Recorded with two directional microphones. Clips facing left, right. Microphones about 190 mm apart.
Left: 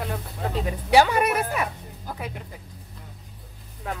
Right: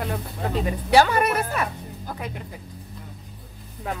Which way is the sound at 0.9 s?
15° left (ahead or behind).